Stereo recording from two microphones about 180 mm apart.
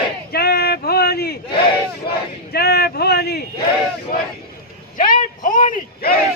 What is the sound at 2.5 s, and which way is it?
Speech, 60° left (ahead or behind).